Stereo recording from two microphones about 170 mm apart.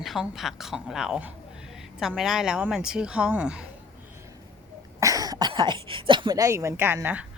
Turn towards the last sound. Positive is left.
turn(degrees=-10)  # may be behind; listen again after turning